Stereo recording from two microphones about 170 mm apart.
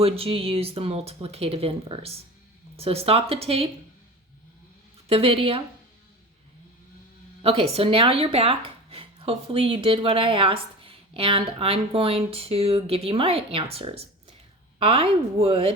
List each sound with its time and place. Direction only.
0.0 s speech: 35° right (ahead or behind)
5.0 s speech: 35° right (ahead or behind)
7.4 s speech: 35° right (ahead or behind)